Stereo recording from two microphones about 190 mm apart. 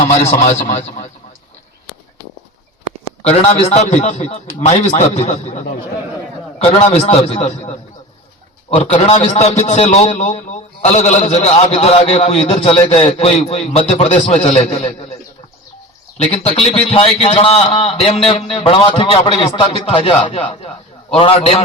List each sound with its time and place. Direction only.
0.1 s a man's voice: 35° left (ahead or behind)
3.2 s a man's voice: 35° left (ahead or behind)
16.1 s a man's voice: 35° left (ahead or behind)